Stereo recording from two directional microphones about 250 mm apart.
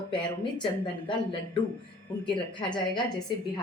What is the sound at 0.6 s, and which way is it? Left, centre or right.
Speech, centre.